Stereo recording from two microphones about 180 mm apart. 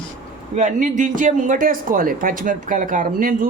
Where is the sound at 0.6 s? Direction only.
45° right (ahead or behind).